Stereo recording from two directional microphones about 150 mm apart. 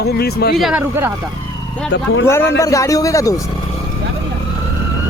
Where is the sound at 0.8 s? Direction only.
15° right (ahead or behind).